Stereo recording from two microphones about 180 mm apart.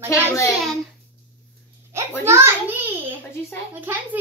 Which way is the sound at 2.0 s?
15° right (ahead or behind).